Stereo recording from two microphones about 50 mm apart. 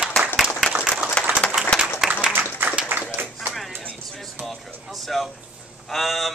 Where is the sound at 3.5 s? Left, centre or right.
Centre.